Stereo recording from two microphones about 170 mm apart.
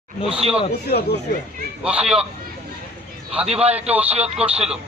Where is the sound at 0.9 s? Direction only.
70° left (ahead or behind).